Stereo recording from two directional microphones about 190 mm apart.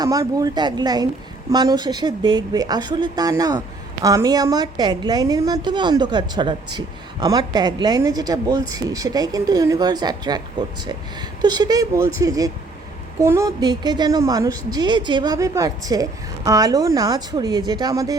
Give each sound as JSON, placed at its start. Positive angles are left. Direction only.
{"t": 0.0, "sound": "speech", "side_deg": -20}
{"t": 11.4, "sound": "speech", "side_deg": -20}